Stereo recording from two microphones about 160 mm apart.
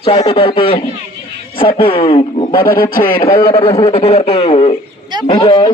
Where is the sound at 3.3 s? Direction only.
30° left (ahead or behind).